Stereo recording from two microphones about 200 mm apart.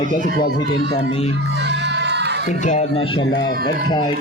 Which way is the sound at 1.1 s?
30° left (ahead or behind).